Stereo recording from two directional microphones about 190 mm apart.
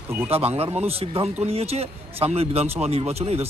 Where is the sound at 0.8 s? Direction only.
30° right (ahead or behind).